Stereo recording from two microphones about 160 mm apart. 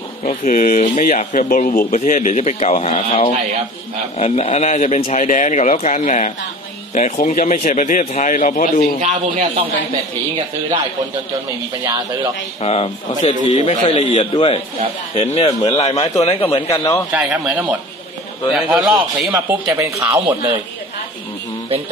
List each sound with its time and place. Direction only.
0.2 s speech: 50° left (ahead or behind)
9.0 s speech: 45° right (ahead or behind)
12.6 s a man's voice: 40° left (ahead or behind)
16.7 s a man's voice: 20° left (ahead or behind)
17.1 s a man's voice: 5° right (ahead or behind)
19.3 s speech: 15° right (ahead or behind)